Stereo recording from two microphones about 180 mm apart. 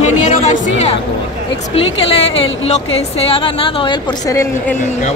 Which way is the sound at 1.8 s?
35° left (ahead or behind).